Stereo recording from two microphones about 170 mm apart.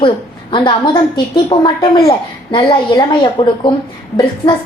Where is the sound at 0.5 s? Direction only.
30° left (ahead or behind).